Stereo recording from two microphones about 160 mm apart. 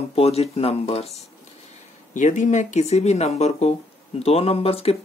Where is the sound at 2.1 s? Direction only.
50° left (ahead or behind).